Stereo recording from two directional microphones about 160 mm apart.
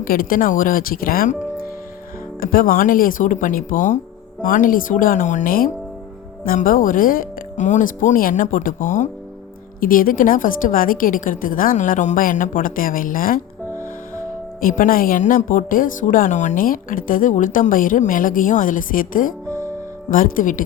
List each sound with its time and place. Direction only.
0.0 s a woman's voice: 65° left (ahead or behind)
2.4 s a woman's voice: 60° left (ahead or behind)